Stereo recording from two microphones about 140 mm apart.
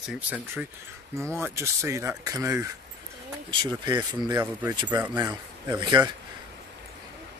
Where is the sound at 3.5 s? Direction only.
35° right (ahead or behind).